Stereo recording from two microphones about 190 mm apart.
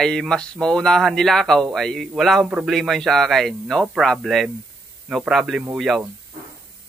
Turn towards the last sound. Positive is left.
turn(degrees=-5)  # may be behind; listen again after turning